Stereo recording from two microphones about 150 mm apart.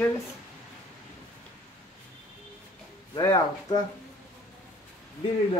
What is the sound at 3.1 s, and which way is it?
Speech, 25° left (ahead or behind).